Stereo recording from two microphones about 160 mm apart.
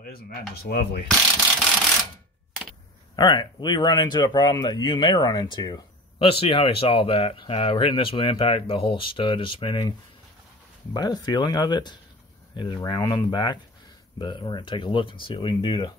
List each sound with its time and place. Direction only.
0.6 s rub: 70° left (ahead or behind)
3.2 s speech: 25° left (ahead or behind)